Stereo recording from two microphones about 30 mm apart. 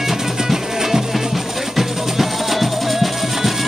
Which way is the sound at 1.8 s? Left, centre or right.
Centre.